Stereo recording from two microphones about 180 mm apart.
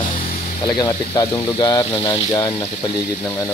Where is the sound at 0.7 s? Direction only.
25° left (ahead or behind).